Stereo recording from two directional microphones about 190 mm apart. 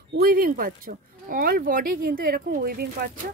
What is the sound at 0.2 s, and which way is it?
Speech, 50° right (ahead or behind).